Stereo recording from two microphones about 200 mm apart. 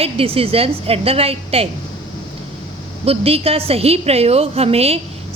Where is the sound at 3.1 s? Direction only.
30° right (ahead or behind).